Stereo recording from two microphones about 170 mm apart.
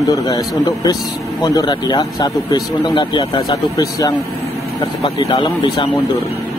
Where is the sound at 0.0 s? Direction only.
20° left (ahead or behind).